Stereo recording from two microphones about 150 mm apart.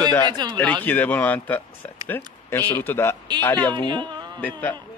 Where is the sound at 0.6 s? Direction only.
10° left (ahead or behind).